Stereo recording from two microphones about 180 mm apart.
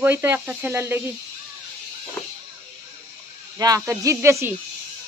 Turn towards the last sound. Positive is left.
turn(degrees=-15)  # may be behind; listen again after turning